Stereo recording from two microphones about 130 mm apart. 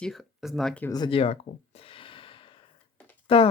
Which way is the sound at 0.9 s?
30° left (ahead or behind).